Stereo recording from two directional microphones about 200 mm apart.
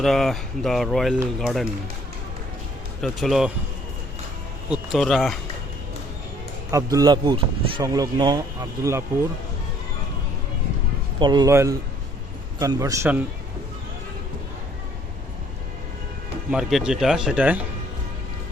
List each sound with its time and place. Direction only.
0.0 s speech: centre (ahead or behind)
3.0 s speech: centre (ahead or behind)
4.7 s speech: centre (ahead or behind)
6.7 s speech: 15° right (ahead or behind)
11.2 s a man's voice: 20° right (ahead or behind)
16.5 s speech: centre (ahead or behind)